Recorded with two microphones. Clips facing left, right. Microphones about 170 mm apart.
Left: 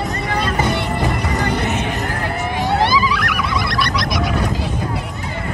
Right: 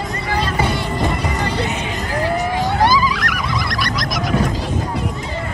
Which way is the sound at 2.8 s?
40° right (ahead or behind).